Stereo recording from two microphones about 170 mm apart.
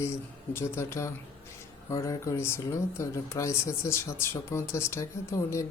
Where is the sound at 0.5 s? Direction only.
15° left (ahead or behind).